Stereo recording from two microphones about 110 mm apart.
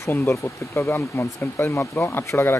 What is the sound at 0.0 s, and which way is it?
Speech, 25° left (ahead or behind).